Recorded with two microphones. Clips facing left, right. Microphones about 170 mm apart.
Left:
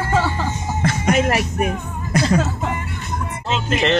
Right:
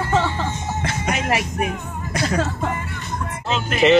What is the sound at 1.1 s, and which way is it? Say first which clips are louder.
Music: left 5 dB; 45° left (ahead or behind).